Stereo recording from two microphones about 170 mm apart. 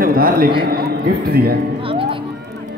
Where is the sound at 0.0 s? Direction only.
55° right (ahead or behind).